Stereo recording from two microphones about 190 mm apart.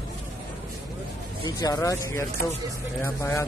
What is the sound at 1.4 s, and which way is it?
Speech, 20° left (ahead or behind).